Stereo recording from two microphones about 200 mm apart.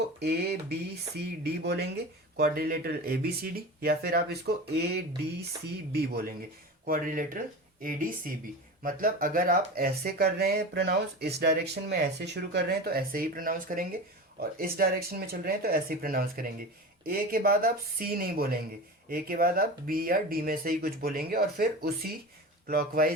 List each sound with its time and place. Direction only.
0.2 s speech: 55° right (ahead or behind)
19.0 s speech: 45° right (ahead or behind)